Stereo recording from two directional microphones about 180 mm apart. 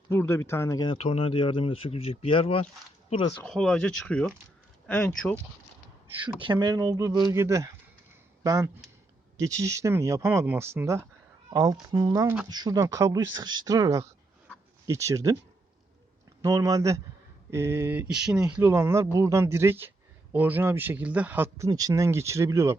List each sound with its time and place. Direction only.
0.1 s speech: 15° left (ahead or behind)
0.9 s speech: 35° left (ahead or behind)
3.4 s speech: 5° left (ahead or behind)
6.2 s speech: 25° right (ahead or behind)
16.4 s speech: 20° right (ahead or behind); by 18.6 s 5° right (ahead or behind)
18.6 s speech: 15° right (ahead or behind)